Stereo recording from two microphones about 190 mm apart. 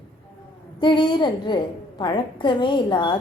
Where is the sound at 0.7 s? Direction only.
25° left (ahead or behind).